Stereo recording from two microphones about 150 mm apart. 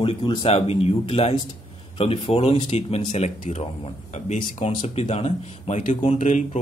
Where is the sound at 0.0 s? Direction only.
35° left (ahead or behind).